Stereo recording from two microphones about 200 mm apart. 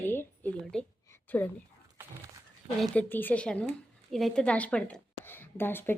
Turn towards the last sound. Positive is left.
turn(degrees=10)  # may be behind; listen again after turning